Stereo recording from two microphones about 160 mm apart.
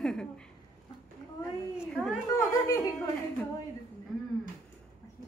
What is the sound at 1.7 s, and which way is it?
Speech, centre (ahead or behind).